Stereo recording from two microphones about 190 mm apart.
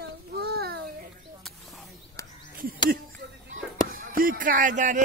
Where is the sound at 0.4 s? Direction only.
55° right (ahead or behind).